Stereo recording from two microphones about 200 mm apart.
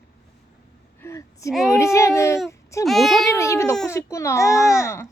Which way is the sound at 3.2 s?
15° left (ahead or behind).